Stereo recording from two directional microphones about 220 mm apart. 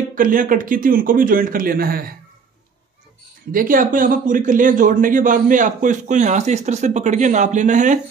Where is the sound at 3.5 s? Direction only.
40° right (ahead or behind).